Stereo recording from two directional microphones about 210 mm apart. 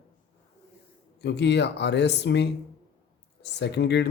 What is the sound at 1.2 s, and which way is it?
Speech, 55° left (ahead or behind).